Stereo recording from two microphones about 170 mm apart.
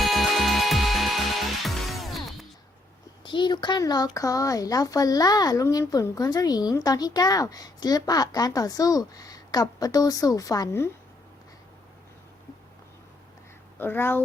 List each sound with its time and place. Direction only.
0.0 s music: centre (ahead or behind)
3.2 s speech: 30° left (ahead or behind)
13.7 s speech: 10° left (ahead or behind)